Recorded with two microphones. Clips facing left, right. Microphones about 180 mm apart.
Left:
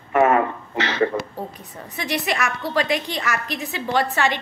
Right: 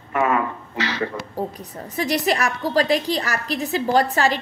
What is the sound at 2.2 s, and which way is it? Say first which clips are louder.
A woman's voice: right 3 dB; 35° right (ahead or behind).